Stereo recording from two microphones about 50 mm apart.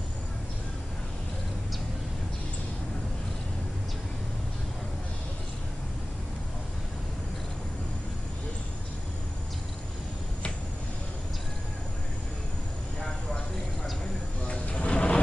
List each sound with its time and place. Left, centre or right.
14.5 s vehicle: left